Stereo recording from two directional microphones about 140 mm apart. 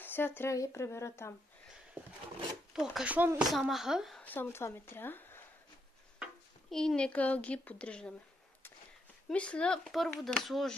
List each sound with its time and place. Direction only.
0.0 s speech: 15° left (ahead or behind)
2.0 s a sound: 10° right (ahead or behind)
2.7 s speech: 5° right (ahead or behind)
3.4 s speech: centre (ahead or behind)
4.2 s a woman's voice: 15° left (ahead or behind)
6.7 s a child's voice: 5° left (ahead or behind)
9.3 s speech: 10° left (ahead or behind)